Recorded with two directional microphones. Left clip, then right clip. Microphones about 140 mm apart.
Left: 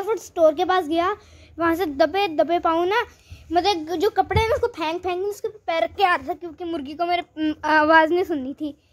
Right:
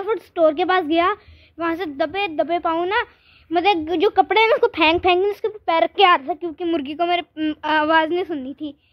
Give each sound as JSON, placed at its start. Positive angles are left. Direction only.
{"t": 0.0, "sound": "a woman's voice", "side_deg": -30}
{"t": 1.6, "sound": "a woman's voice", "side_deg": 15}
{"t": 3.5, "sound": "a woman's voice", "side_deg": -35}
{"t": 3.8, "sound": "a woman's voice", "side_deg": -50}
{"t": 5.7, "sound": "a woman's voice", "side_deg": -50}
{"t": 6.4, "sound": "a woman's voice", "side_deg": -40}
{"t": 7.2, "sound": "speech", "side_deg": -5}